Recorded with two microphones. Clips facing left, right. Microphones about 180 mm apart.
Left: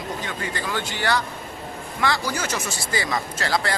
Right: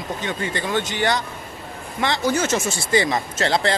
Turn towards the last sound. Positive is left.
turn(degrees=-25)  # may be behind; listen again after turning